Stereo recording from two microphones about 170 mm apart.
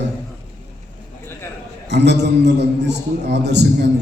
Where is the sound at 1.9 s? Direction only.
85° right.